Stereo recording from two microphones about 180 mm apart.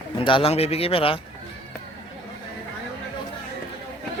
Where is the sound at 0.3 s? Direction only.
30° left (ahead or behind).